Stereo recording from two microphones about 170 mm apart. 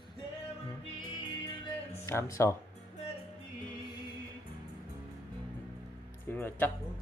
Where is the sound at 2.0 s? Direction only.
15° left (ahead or behind).